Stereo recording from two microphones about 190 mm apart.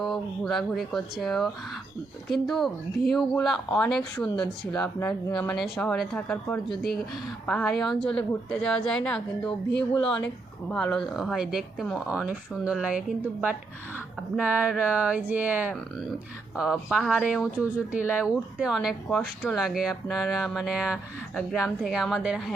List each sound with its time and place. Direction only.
0.0 s speech: centre (ahead or behind)
9.9 s speech: 25° left (ahead or behind)
10.7 s speech: 5° left (ahead or behind)
15.7 s speech: centre (ahead or behind)